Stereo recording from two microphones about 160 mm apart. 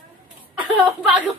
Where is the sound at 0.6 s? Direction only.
10° right (ahead or behind).